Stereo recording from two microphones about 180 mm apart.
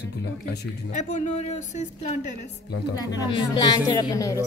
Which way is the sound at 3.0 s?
20° left (ahead or behind).